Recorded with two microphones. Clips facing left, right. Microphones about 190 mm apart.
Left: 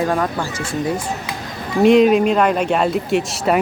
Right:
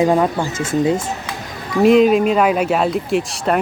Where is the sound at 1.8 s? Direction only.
Centre (ahead or behind).